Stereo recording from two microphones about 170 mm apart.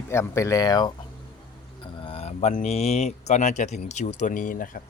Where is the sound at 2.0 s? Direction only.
40° left (ahead or behind).